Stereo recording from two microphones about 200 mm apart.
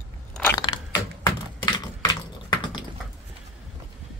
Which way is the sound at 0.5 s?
20° left (ahead or behind).